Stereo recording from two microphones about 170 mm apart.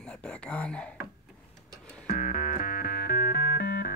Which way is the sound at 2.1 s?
55° left (ahead or behind).